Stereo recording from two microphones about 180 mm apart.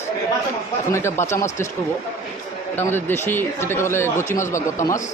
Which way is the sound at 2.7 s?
10° left (ahead or behind).